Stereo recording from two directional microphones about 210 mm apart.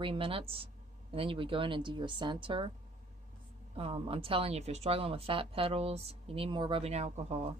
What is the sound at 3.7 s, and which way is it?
Speech, 25° right (ahead or behind).